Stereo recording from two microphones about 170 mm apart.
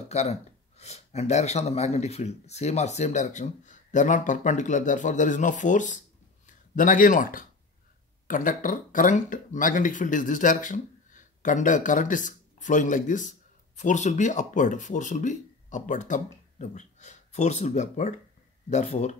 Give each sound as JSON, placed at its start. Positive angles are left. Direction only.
{"t": 0.1, "sound": "speech", "side_deg": 40}